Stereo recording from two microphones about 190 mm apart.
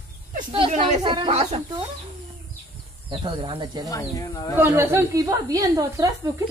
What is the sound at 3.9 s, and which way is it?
Speech, 20° left (ahead or behind).